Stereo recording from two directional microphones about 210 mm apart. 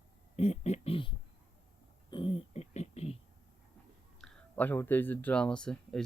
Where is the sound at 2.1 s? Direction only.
25° left (ahead or behind).